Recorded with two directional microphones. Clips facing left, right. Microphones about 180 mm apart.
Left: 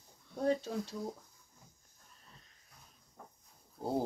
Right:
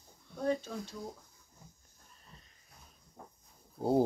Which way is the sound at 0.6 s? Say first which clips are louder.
Left 3 dB; 35° left (ahead or behind).